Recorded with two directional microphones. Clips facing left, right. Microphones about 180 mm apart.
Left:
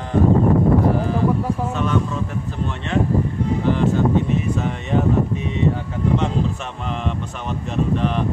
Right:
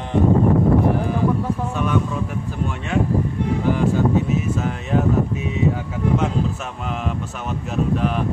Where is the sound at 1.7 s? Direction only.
10° right (ahead or behind).